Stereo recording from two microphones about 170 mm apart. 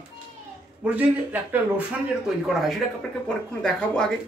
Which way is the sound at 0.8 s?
10° right (ahead or behind).